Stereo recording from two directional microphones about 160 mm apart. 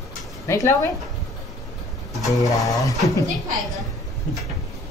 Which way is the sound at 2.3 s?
20° left (ahead or behind).